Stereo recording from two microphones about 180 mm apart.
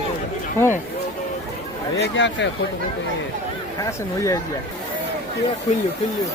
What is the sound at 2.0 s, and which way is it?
Speech, 80° left.